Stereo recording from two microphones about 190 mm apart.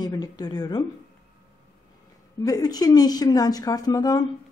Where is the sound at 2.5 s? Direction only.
20° left (ahead or behind).